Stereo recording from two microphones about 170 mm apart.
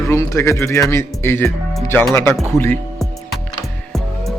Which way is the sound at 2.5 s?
15° left (ahead or behind).